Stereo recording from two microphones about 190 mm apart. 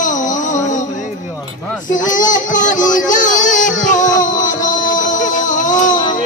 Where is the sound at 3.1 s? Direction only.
40° left (ahead or behind).